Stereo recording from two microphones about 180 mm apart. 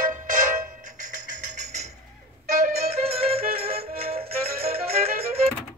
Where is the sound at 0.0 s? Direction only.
45° right (ahead or behind).